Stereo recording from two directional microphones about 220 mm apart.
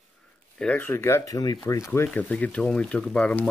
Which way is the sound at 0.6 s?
5° left (ahead or behind).